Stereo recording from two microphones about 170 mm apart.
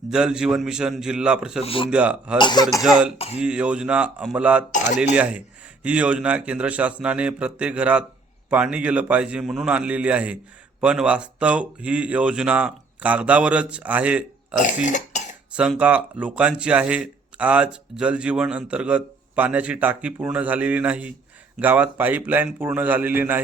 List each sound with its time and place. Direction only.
0.1 s a man's voice: 5° right (ahead or behind)
1.6 s speech: 30° left (ahead or behind)
1.9 s speech: 5° right (ahead or behind)
2.4 s speech: 25° left (ahead or behind)
3.3 s speech: 5° right (ahead or behind)
14.7 s cough: 45° left (ahead or behind)
15.5 s speech: 5° right (ahead or behind)